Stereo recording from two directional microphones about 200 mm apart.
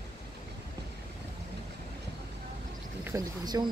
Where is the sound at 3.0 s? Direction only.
15° right (ahead or behind).